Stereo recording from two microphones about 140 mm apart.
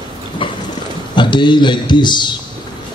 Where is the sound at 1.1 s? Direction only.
35° left (ahead or behind).